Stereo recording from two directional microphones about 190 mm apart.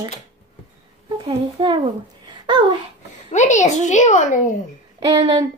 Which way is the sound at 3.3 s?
40° left (ahead or behind).